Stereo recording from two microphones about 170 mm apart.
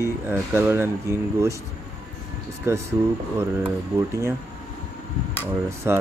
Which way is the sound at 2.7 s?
15° right (ahead or behind).